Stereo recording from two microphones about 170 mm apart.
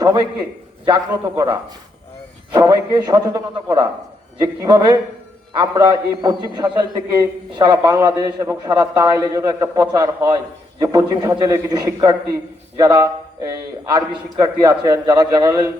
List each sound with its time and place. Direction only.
0.0 s a man's voice: 25° right (ahead or behind)